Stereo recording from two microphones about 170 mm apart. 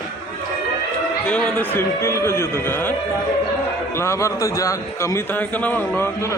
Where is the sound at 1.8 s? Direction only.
15° left (ahead or behind).